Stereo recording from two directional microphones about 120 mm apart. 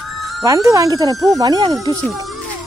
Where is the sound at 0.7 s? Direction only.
30° right (ahead or behind).